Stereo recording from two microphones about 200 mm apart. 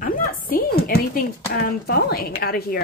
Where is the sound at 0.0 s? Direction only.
45° left (ahead or behind).